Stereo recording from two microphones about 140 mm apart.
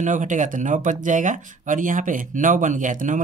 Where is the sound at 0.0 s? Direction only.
65° right (ahead or behind).